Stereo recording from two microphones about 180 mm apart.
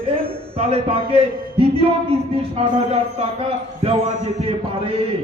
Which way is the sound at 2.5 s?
35° right (ahead or behind).